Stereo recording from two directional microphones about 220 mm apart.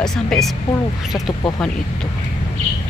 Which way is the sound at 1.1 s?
15° left (ahead or behind).